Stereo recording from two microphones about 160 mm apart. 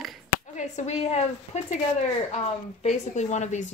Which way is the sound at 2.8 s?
45° left (ahead or behind).